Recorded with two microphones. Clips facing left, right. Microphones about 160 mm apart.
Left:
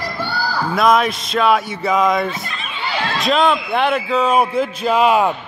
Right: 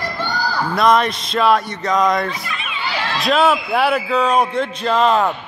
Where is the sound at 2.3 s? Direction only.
35° left (ahead or behind).